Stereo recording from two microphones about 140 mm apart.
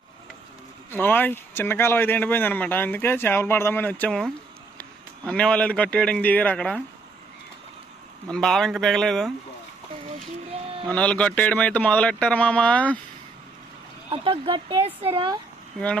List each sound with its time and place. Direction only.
0.9 s a man's voice: 15° left (ahead or behind)
8.3 s speech: 5° left (ahead or behind)
10.5 s a sound: 45° right (ahead or behind)
10.8 s speech: 10° left (ahead or behind)
14.1 s speech: 40° right (ahead or behind)